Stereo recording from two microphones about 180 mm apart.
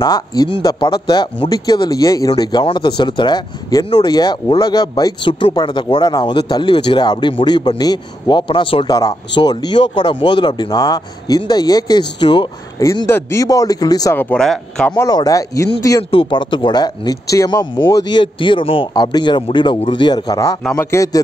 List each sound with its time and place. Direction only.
0.0 s speech: 20° left (ahead or behind)
14.3 s speech: 5° left (ahead or behind)
15.0 s speech: 20° left (ahead or behind)
16.0 s speech: 30° left (ahead or behind)